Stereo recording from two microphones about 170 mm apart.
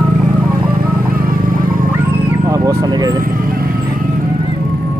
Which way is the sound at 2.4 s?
20° right (ahead or behind).